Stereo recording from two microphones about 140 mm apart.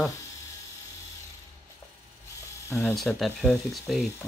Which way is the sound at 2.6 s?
20° left (ahead or behind).